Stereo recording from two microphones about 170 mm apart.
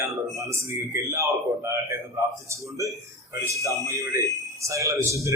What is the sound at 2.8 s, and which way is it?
Speech, 20° right (ahead or behind).